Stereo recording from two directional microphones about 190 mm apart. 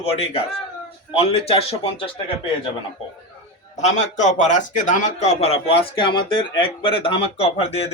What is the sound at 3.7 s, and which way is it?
A man's voice, 40° left (ahead or behind).